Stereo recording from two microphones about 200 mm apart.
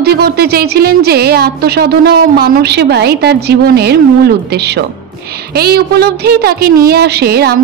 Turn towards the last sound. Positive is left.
turn(degrees=-55)  # may be behind; listen again after turning